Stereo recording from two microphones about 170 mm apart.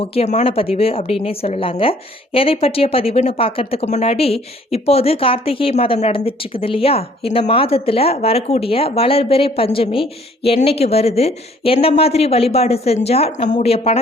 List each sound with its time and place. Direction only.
0.0 s a woman's voice: 35° left (ahead or behind)